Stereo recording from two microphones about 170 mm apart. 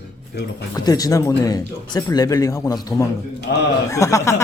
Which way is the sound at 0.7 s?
20° left (ahead or behind).